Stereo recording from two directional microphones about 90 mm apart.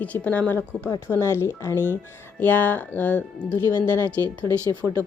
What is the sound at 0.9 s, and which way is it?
A woman's voice, 30° left (ahead or behind).